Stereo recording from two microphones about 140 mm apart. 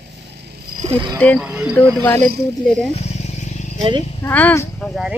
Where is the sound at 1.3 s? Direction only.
5° right (ahead or behind).